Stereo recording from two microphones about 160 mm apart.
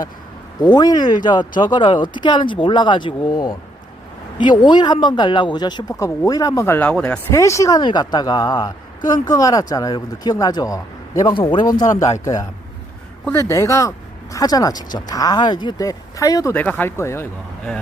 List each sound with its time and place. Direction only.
0.6 s speech: 25° left (ahead or behind); by 7.2 s 5° left (ahead or behind)
7.3 s speech: 20° left (ahead or behind)
16.6 s speech: 10° left (ahead or behind)